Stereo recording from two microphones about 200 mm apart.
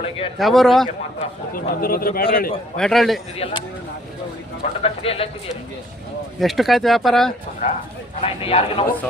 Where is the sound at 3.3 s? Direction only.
30° left (ahead or behind).